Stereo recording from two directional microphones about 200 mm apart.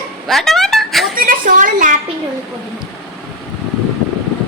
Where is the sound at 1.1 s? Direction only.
45° right (ahead or behind).